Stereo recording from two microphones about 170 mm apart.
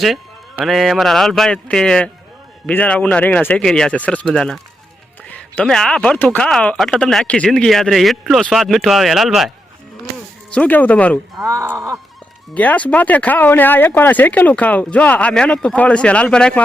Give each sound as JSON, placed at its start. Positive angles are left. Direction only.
{"t": 0.6, "sound": "speech", "side_deg": 0}
{"t": 10.5, "sound": "speech", "side_deg": 10}
{"t": 11.4, "sound": "speech", "side_deg": -15}
{"t": 12.5, "sound": "speech", "side_deg": 10}